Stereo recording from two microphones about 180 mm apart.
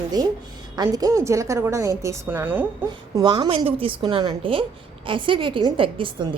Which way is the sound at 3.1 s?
25° right (ahead or behind).